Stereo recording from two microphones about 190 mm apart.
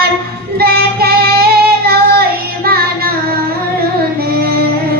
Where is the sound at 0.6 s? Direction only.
55° right (ahead or behind).